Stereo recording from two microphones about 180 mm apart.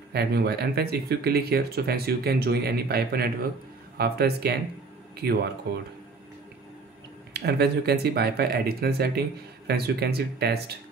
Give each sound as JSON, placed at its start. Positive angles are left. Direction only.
{"t": 0.1, "sound": "speech", "side_deg": -65}
{"t": 7.3, "sound": "speech", "side_deg": -65}